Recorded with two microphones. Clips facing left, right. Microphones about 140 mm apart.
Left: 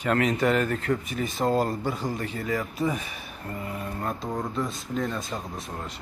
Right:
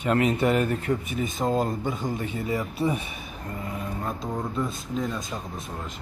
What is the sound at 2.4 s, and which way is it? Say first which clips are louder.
Speech: right 1 dB; 25° right (ahead or behind).